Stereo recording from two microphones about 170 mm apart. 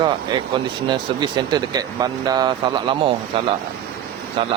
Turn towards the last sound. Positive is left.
turn(degrees=-35)  # may be behind; listen again after turning